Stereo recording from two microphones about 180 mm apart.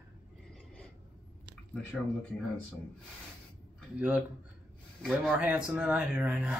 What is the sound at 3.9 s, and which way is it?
Speech, 10° right (ahead or behind).